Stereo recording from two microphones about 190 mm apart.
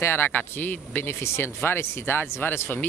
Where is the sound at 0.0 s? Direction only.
10° left (ahead or behind).